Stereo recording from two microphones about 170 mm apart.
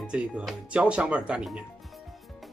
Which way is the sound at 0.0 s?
5° right (ahead or behind).